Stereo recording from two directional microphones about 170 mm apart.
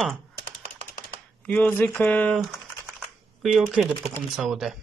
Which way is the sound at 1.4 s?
5° left (ahead or behind).